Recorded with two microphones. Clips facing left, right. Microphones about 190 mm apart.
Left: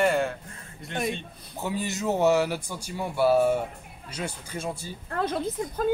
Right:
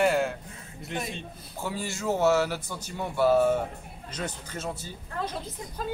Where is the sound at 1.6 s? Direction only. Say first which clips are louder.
Left 3 dB; 20° left (ahead or behind).